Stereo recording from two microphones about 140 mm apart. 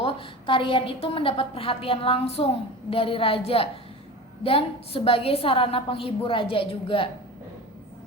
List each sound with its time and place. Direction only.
0.0 s a woman's voice: 40° left (ahead or behind)